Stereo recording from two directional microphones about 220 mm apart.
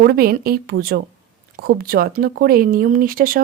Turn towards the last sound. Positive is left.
turn(degrees=-40)  # may be behind; listen again after turning